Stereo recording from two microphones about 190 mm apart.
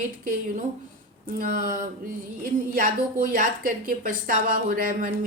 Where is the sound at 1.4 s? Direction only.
45° right (ahead or behind).